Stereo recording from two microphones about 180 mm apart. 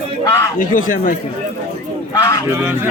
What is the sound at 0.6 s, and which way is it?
Speech, 45° left (ahead or behind).